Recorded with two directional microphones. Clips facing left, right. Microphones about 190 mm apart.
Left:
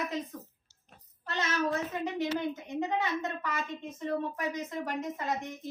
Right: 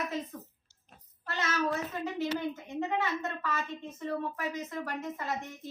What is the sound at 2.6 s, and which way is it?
A woman's voice, 15° left (ahead or behind).